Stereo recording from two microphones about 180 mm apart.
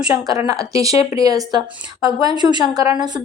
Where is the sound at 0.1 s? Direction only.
20° right (ahead or behind).